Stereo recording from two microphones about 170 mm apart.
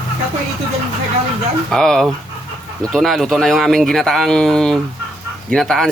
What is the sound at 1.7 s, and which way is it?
Speech, 5° left (ahead or behind).